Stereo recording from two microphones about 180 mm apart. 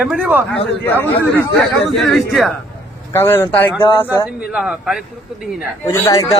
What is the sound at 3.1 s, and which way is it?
Speech, 15° left (ahead or behind).